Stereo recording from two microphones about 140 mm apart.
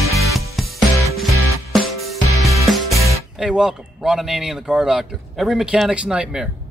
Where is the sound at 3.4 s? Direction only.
5° right (ahead or behind).